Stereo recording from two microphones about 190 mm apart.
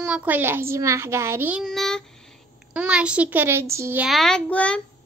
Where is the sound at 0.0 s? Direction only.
5° right (ahead or behind).